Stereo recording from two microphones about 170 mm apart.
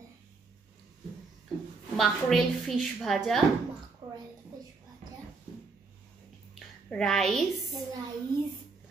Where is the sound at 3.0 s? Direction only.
Centre (ahead or behind).